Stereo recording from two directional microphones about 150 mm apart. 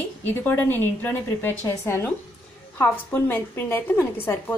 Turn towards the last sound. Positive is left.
turn(degrees=20)  # may be behind; listen again after turning